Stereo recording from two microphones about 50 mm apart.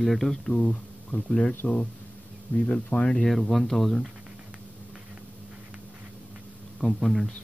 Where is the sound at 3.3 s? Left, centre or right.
Centre.